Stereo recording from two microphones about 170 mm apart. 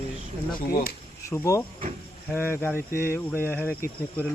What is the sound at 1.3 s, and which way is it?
Speech, 20° left (ahead or behind).